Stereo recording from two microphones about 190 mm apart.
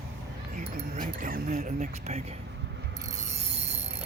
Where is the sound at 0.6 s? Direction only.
35° right (ahead or behind).